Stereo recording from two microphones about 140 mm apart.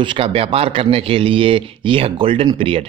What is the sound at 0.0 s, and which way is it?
A man's voice, 35° right (ahead or behind).